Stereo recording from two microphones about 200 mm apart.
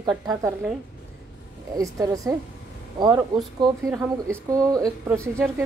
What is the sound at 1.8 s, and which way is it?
Speech, 15° right (ahead or behind).